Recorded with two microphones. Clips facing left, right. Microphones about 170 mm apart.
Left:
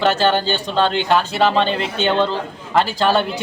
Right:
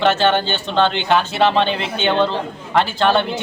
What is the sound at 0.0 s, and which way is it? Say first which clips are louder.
A man's voice: right 1 dB; centre (ahead or behind).